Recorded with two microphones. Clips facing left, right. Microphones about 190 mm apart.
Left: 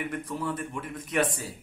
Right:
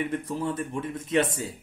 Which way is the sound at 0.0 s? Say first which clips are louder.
Right 3 dB; 25° right (ahead or behind).